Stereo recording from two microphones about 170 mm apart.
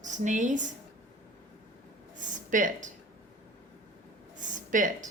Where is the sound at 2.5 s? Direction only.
50° right (ahead or behind).